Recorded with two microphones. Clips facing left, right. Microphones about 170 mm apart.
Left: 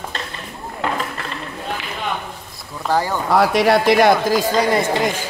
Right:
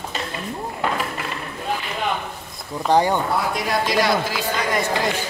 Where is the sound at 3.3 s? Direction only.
85° left; by 4.8 s 35° left (ahead or behind).